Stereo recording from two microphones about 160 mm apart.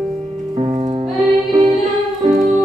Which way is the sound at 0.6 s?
30° right (ahead or behind).